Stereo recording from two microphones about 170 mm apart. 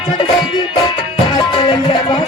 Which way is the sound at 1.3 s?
25° left (ahead or behind).